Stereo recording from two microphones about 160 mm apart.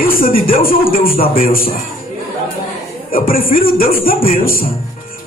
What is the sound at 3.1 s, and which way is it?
Music, 65° left (ahead or behind).